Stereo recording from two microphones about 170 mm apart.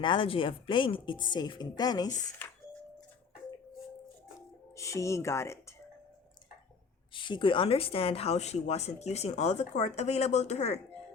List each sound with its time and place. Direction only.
0.0 s speech: 30° left (ahead or behind)
4.8 s speech: 15° left (ahead or behind)
7.1 s speech: 30° left (ahead or behind)